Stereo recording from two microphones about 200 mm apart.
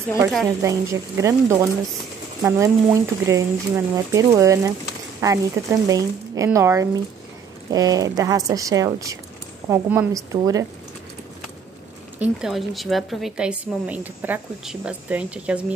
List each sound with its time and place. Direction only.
0.6 s speech: 15° right (ahead or behind)
12.2 s a woman's voice: 5° right (ahead or behind)